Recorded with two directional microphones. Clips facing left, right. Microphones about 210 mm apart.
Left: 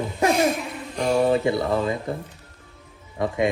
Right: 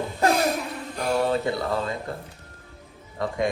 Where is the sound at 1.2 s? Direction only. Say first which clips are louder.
Left 4 dB; 15° left (ahead or behind).